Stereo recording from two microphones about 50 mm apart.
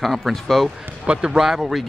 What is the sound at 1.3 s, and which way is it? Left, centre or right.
Speech, centre.